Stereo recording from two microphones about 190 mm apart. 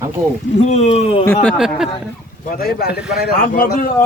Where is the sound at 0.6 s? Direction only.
35° left (ahead or behind).